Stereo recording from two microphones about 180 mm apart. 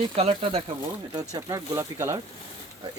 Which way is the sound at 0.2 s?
35° right (ahead or behind).